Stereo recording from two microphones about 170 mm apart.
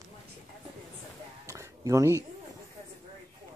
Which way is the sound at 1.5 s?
20° right (ahead or behind).